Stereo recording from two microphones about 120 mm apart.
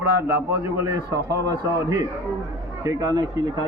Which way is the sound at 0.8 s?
25° right (ahead or behind).